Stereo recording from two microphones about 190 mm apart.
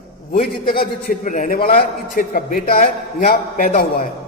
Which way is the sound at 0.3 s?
50° left (ahead or behind).